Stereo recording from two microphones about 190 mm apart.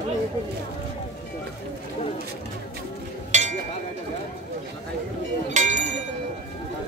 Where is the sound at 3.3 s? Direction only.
40° right (ahead or behind).